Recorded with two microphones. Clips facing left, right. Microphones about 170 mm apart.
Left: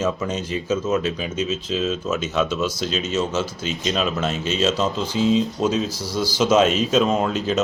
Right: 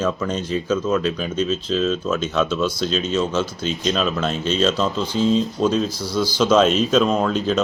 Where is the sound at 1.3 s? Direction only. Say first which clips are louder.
Right 3 dB; 5° left (ahead or behind).